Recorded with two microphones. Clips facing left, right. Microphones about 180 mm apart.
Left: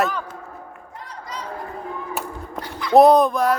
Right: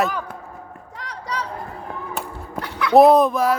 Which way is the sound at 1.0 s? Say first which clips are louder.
Right 5 dB; 75° right (ahead or behind).